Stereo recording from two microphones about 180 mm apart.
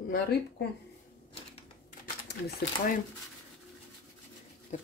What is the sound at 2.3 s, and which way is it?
Speech, 55° left (ahead or behind).